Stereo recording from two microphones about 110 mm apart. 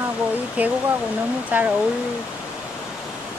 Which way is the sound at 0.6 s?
15° right (ahead or behind).